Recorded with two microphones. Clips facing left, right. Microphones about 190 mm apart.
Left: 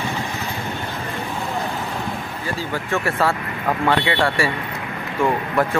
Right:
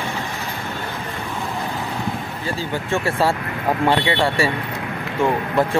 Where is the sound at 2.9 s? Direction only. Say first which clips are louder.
Right 1 dB; 25° right (ahead or behind).